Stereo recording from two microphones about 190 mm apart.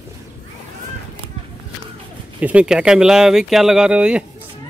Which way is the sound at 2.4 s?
5° right (ahead or behind).